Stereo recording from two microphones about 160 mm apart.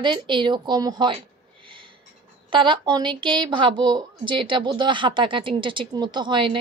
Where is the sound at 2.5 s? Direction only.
30° right (ahead or behind).